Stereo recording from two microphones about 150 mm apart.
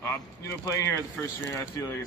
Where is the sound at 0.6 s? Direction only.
20° left (ahead or behind).